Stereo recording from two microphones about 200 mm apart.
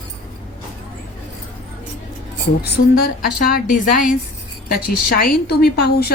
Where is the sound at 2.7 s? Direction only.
45° left (ahead or behind).